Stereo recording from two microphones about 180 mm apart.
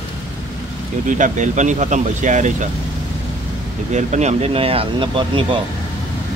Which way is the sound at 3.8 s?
40° right (ahead or behind).